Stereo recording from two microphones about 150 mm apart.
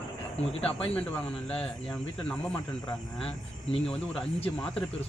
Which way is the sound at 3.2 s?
40° left (ahead or behind).